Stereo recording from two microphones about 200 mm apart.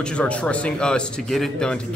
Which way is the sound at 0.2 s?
5° left (ahead or behind).